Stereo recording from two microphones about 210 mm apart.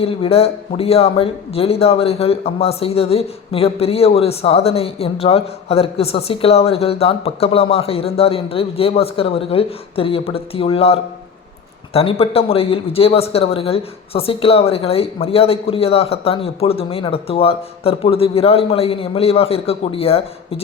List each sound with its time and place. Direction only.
0.0 s a man's voice: 25° left (ahead or behind)